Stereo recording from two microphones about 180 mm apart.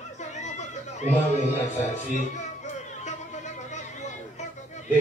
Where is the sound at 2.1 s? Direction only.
40° left (ahead or behind).